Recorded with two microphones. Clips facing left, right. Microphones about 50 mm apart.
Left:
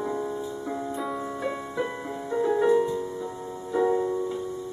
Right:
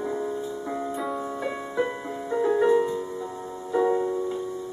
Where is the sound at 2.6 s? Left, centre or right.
Centre.